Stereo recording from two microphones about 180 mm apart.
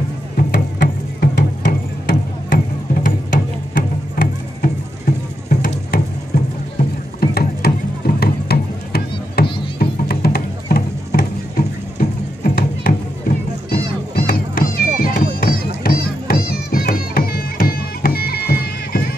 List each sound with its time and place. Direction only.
0.4 s music: 50° left (ahead or behind)
7.2 s mechanisms: 55° left (ahead or behind)
8.2 s music: 60° left (ahead or behind)